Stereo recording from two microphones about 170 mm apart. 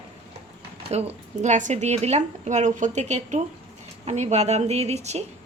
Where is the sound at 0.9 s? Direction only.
40° right (ahead or behind).